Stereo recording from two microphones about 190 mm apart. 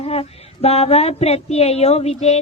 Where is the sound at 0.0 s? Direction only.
30° left (ahead or behind).